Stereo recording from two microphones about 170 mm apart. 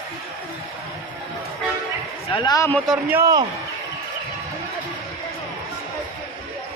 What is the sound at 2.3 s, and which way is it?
Speech, 25° left (ahead or behind).